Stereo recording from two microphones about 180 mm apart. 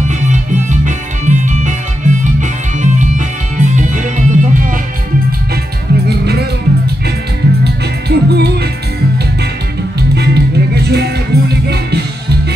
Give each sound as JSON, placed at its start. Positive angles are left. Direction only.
{"t": 0.3, "sound": "music", "side_deg": -45}
{"t": 6.0, "sound": "music", "side_deg": -65}
{"t": 7.6, "sound": "music", "side_deg": -65}
{"t": 10.1, "sound": "music", "side_deg": -65}